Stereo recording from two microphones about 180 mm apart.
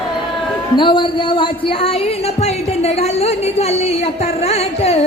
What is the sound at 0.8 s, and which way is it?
Speech, 25° left (ahead or behind).